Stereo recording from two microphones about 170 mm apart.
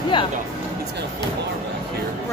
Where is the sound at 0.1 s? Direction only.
30° left (ahead or behind).